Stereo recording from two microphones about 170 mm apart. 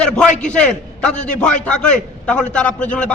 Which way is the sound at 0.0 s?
5° left (ahead or behind).